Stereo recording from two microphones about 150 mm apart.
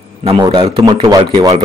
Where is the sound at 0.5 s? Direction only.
25° right (ahead or behind).